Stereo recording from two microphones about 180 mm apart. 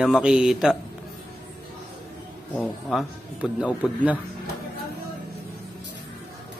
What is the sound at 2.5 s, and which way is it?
Speech, 5° left (ahead or behind).